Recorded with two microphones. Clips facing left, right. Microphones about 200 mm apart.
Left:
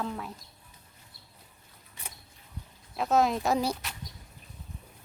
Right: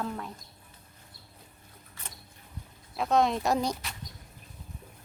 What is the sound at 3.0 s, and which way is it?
Speech, 5° left (ahead or behind).